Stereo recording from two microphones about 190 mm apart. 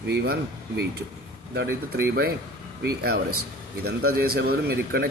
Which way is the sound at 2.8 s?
55° right (ahead or behind).